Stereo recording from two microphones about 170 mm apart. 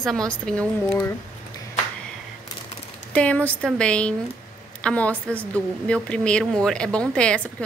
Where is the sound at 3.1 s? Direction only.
10° left (ahead or behind).